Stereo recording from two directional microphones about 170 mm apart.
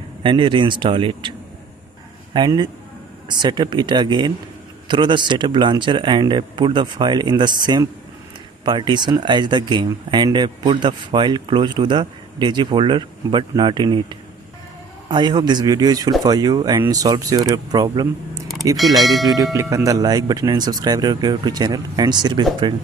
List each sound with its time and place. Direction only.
0.2 s speech: 30° right (ahead or behind)
2.3 s speech: 25° right (ahead or behind)
18.9 s speech: centre (ahead or behind)
19.2 s speech: 20° right (ahead or behind)